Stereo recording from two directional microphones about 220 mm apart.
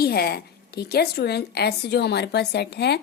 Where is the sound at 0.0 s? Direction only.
45° left (ahead or behind).